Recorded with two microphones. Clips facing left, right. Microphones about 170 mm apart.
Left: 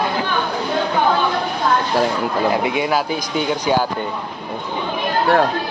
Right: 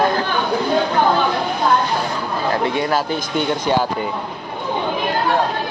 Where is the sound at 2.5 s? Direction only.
10° left (ahead or behind).